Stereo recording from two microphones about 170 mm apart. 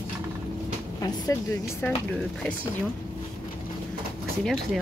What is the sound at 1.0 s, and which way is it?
Speech, 20° left (ahead or behind).